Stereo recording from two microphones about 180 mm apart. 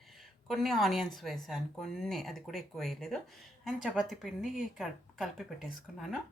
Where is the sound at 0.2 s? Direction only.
Centre (ahead or behind).